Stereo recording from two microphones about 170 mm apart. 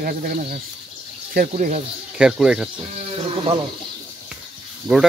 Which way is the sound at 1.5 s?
40° right (ahead or behind).